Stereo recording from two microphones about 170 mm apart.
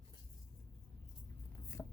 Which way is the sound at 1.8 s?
15° left (ahead or behind).